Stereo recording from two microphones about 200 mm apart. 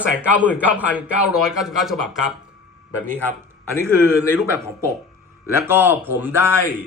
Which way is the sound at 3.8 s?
10° right (ahead or behind).